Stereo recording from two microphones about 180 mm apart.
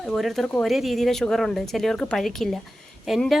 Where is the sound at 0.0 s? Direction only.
Centre (ahead or behind).